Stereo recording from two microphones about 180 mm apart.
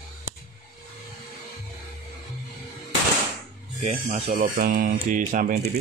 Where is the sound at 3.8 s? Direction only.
40° right (ahead or behind).